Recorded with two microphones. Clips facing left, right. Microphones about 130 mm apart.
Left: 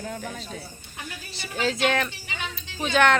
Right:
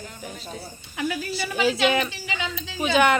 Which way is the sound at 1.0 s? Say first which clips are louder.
Right 12 dB; 90° right.